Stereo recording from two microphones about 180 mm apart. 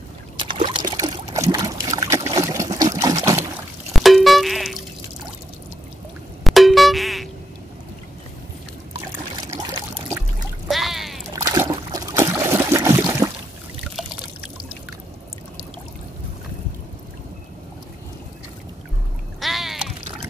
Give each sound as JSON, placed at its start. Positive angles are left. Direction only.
{"t": 0.4, "sound": "boat", "side_deg": -25}
{"t": 3.9, "sound": "music", "side_deg": 0}
{"t": 6.4, "sound": "music", "side_deg": 0}
{"t": 10.7, "sound": "a sound", "side_deg": 0}
{"t": 11.3, "sound": "trickle", "side_deg": -15}
{"t": 19.4, "sound": "a sound", "side_deg": 0}